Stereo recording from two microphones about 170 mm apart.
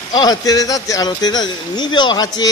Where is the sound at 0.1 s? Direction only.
25° left (ahead or behind).